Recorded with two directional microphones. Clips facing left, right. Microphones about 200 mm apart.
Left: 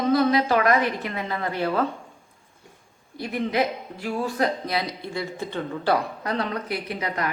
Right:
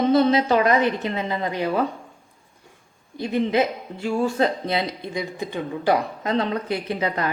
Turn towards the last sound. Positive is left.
turn(degrees=-30)  # may be behind; listen again after turning